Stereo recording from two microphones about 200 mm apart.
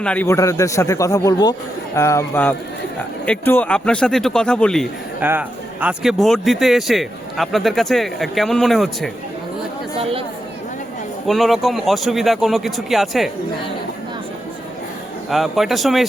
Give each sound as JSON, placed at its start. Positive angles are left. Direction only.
{"t": 0.0, "sound": "a man's voice", "side_deg": 5}
{"t": 5.2, "sound": "speech", "side_deg": -10}
{"t": 10.0, "sound": "speech", "side_deg": -25}
{"t": 11.3, "sound": "speech", "side_deg": 0}
{"t": 15.3, "sound": "speech", "side_deg": 0}